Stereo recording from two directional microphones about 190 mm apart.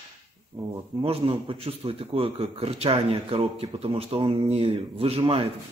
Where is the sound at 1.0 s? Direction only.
30° right (ahead or behind).